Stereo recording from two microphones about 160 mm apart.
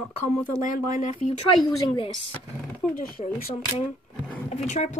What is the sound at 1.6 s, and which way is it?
Speech, 30° left (ahead or behind).